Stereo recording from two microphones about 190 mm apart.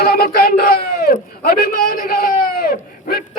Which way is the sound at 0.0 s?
50° left (ahead or behind).